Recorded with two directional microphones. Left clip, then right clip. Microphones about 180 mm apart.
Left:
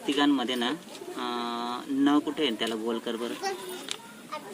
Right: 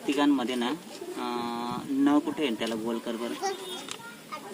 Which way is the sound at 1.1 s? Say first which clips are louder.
Left 1 dB; 15° right (ahead or behind).